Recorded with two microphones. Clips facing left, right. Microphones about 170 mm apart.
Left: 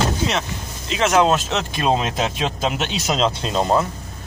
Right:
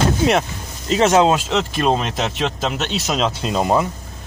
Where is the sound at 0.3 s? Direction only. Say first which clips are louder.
Right 6 dB; 55° right (ahead or behind).